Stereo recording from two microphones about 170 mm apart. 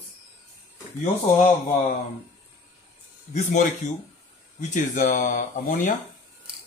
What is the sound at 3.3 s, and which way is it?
Speech, 45° left (ahead or behind).